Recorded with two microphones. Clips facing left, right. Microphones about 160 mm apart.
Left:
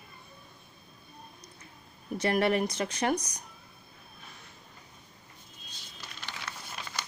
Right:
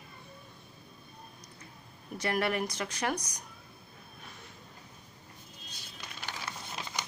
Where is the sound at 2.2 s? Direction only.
25° left (ahead or behind).